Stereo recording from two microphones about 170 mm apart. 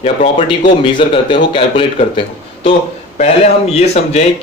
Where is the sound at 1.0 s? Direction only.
30° left (ahead or behind).